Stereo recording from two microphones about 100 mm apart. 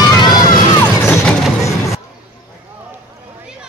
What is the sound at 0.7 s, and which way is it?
Music, 35° left (ahead or behind).